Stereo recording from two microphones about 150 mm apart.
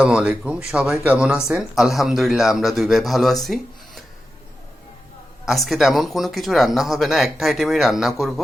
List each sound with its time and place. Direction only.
0.0 s speech: 5° right (ahead or behind)
5.5 s speech: centre (ahead or behind)